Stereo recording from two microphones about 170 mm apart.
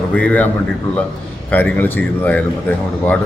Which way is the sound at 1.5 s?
10° left (ahead or behind).